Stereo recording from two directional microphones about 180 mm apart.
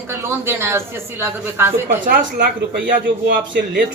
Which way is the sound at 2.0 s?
55° right (ahead or behind).